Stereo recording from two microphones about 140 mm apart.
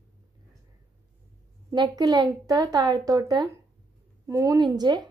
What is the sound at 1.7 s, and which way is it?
A woman's voice, 30° right (ahead or behind).